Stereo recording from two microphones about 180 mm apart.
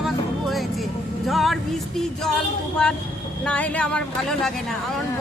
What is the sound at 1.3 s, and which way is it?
Vehicle, centre (ahead or behind).